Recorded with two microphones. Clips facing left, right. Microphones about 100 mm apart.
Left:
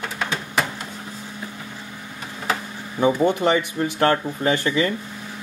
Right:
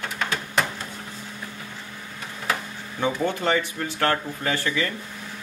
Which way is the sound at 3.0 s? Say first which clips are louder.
Left 6 dB; 15° left (ahead or behind).